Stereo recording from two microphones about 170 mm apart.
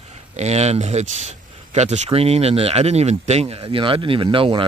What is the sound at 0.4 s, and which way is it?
Speech, 40° right (ahead or behind).